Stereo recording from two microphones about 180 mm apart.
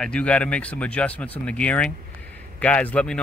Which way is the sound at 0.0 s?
5° left (ahead or behind).